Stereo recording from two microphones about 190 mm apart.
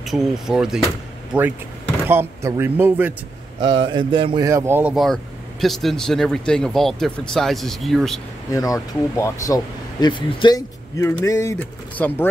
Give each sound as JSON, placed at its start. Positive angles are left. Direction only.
{"t": 0.0, "sound": "speech", "side_deg": 0}
{"t": 2.0, "sound": "speech", "side_deg": -15}
{"t": 3.6, "sound": "speech", "side_deg": -25}
{"t": 4.5, "sound": "speech", "side_deg": -15}
{"t": 8.5, "sound": "speech", "side_deg": 20}